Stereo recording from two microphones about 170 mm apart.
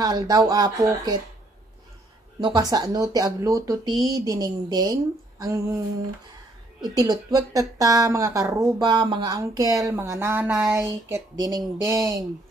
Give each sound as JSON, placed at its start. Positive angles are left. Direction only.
{"t": 0.0, "sound": "speech", "side_deg": -20}
{"t": 2.4, "sound": "speech", "side_deg": -25}
{"t": 5.4, "sound": "a sound", "side_deg": -20}
{"t": 6.8, "sound": "speech", "side_deg": -25}